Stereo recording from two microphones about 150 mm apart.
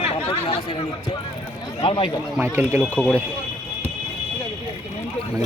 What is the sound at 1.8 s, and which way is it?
Speech, 35° left (ahead or behind).